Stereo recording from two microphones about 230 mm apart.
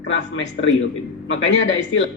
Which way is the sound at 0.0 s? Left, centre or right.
Left.